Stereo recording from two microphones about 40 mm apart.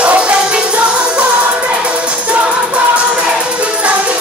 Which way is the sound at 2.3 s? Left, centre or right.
Right.